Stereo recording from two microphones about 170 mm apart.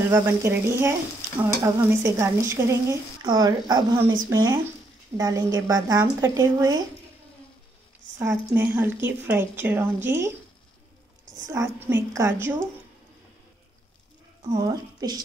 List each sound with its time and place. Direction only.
0.1 s a woman's voice: 15° right (ahead or behind)
8.2 s speech: 15° right (ahead or behind)
11.4 s speech: 20° right (ahead or behind)
14.5 s a woman's voice: 20° right (ahead or behind)